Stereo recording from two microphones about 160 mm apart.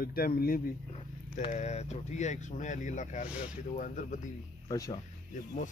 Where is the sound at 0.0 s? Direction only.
70° left (ahead or behind).